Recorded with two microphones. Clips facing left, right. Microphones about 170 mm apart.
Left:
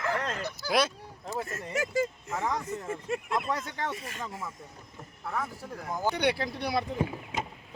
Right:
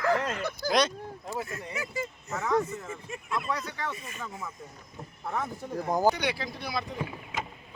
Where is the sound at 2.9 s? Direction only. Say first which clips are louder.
Left 5 dB; 70° left (ahead or behind).